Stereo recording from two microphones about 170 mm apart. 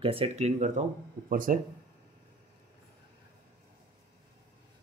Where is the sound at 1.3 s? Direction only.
55° right (ahead or behind).